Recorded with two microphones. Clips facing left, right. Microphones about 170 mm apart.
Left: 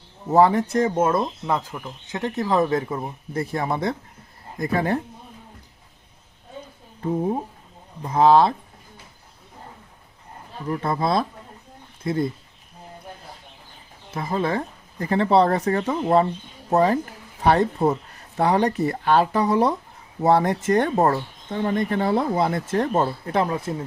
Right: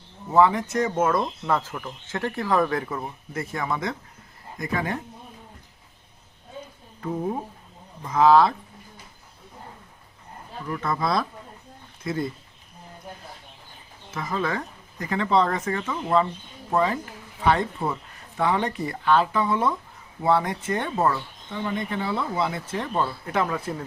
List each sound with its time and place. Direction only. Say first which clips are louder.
0.3 s speech: left 3 dB; 40° left (ahead or behind)
1.5 s speech: even; 15° left (ahead or behind); by 4.9 s 35° left (ahead or behind)
7.2 s speech: left 3 dB; 20° left (ahead or behind)
8.0 s speech: left 1 dB; 30° left (ahead or behind)
10.7 s speech: left 3 dB; 30° left (ahead or behind)
14.1 s speech: left 3 dB; 30° left (ahead or behind)